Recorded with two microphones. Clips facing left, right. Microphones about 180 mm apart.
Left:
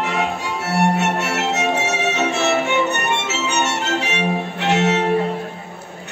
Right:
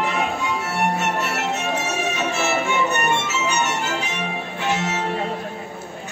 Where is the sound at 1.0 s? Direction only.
70° left (ahead or behind).